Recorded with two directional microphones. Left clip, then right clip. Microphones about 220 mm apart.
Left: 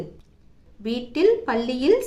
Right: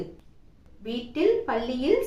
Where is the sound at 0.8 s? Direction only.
50° left (ahead or behind).